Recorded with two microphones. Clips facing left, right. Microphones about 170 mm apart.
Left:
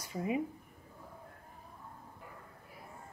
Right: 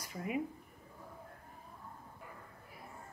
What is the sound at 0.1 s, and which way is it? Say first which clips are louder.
Speech: left 4 dB; 25° left (ahead or behind).